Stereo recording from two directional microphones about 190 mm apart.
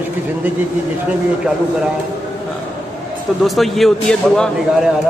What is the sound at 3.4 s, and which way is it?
A man's voice, centre (ahead or behind).